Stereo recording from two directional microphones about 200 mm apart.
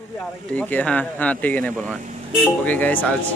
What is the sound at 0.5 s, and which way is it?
Speech, 5° left (ahead or behind).